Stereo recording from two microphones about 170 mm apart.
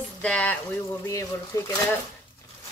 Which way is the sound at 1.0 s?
20° left (ahead or behind).